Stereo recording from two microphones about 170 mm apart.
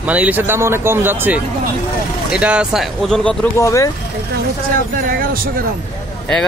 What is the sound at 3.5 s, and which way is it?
Speech, 20° left (ahead or behind).